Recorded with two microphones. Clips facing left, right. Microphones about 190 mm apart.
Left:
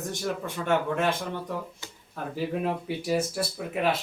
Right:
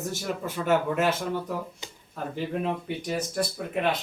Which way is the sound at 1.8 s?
15° right (ahead or behind).